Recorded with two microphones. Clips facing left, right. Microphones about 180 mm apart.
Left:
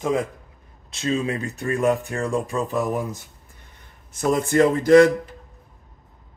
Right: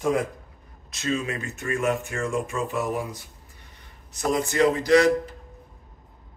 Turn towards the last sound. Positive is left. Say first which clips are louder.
# left 5 dB
turn(degrees=50)  # may be behind; listen again after turning